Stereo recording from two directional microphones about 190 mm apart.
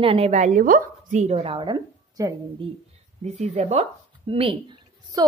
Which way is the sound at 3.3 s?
35° right (ahead or behind).